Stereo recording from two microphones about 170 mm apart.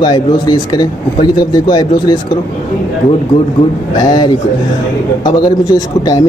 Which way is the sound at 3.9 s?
25° left (ahead or behind).